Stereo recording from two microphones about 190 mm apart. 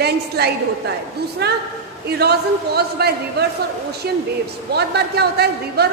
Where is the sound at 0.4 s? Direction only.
60° right (ahead or behind).